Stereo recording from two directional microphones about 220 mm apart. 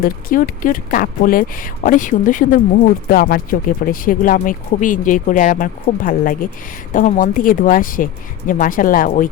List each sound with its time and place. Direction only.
0.0 s speech: 40° left (ahead or behind)